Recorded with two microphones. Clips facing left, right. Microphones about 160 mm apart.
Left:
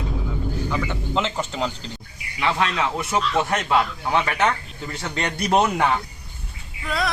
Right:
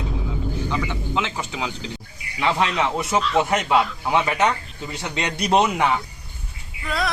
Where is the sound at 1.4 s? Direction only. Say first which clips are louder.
Left 3 dB; 10° right (ahead or behind).